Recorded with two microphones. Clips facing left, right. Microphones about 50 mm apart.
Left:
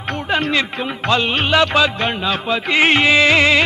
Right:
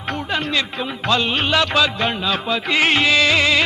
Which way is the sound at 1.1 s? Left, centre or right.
Centre.